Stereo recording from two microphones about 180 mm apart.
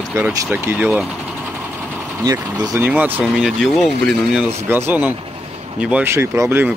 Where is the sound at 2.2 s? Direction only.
20° right (ahead or behind); by 4.4 s centre (ahead or behind).